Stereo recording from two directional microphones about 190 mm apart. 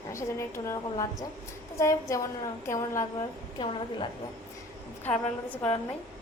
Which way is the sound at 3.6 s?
25° left (ahead or behind).